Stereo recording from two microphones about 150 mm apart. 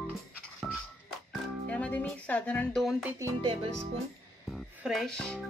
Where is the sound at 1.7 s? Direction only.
10° left (ahead or behind); by 3.2 s 5° right (ahead or behind).